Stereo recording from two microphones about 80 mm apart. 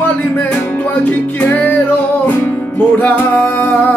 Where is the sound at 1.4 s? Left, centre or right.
Left.